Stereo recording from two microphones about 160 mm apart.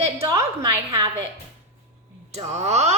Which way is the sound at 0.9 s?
25° right (ahead or behind).